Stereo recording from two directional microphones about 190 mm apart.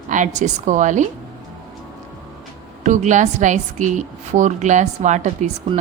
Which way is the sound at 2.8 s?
40° right (ahead or behind).